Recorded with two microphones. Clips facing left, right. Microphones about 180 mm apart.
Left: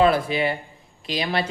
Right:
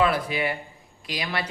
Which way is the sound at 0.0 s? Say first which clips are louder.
Left 4 dB; 30° left (ahead or behind).